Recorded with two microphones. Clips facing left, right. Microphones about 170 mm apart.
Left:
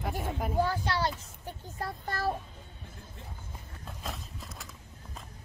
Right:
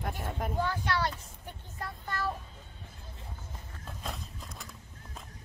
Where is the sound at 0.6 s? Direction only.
30° left (ahead or behind).